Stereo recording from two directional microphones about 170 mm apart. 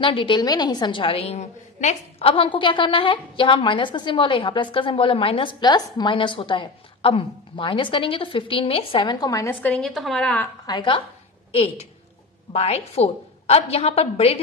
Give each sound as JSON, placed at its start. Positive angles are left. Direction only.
{"t": 0.0, "sound": "a woman's voice", "side_deg": 30}
{"t": 10.7, "sound": "a woman's voice", "side_deg": 25}